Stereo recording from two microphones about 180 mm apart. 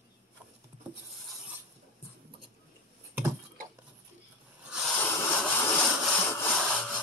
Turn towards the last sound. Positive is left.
turn(degrees=5)  # may be behind; listen again after turning